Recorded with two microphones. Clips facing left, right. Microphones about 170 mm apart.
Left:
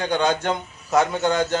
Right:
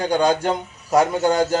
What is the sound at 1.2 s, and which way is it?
Speech, 35° right (ahead or behind).